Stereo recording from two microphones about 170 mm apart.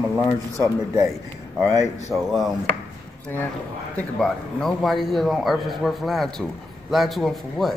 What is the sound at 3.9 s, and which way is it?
A man's voice, 5° left (ahead or behind).